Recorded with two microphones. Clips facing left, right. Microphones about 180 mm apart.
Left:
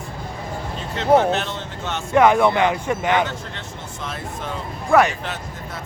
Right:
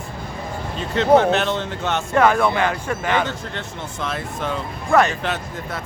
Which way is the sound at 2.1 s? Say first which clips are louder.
Left 2 dB; 15° left (ahead or behind).